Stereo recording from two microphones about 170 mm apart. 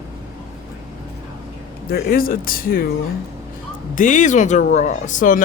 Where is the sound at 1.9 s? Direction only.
60° left (ahead or behind).